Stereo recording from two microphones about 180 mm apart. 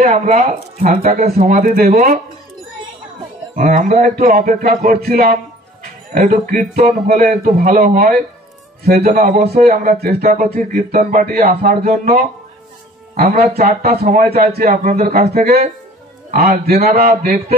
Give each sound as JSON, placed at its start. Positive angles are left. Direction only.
{"t": 0.0, "sound": "speech", "side_deg": -40}
{"t": 3.5, "sound": "a man's voice", "side_deg": -50}
{"t": 13.8, "sound": "a man's voice", "side_deg": -50}